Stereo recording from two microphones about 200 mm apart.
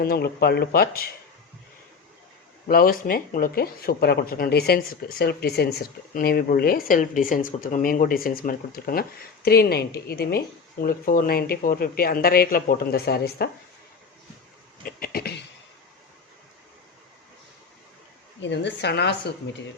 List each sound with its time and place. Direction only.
0.0 s speech: 50° left (ahead or behind)
2.6 s speech: 45° left (ahead or behind)
14.8 s a sound: 45° left (ahead or behind)
18.3 s a woman's voice: 65° left (ahead or behind)